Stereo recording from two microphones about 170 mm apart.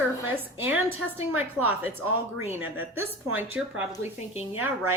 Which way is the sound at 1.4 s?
10° right (ahead or behind).